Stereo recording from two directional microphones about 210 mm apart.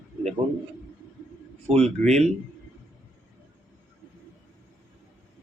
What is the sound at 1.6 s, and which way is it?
Speech, 30° right (ahead or behind).